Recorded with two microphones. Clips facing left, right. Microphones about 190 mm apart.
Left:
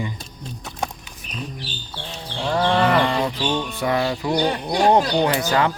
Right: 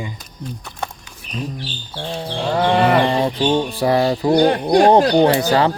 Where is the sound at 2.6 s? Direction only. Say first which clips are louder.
Right 3 dB; 15° right (ahead or behind).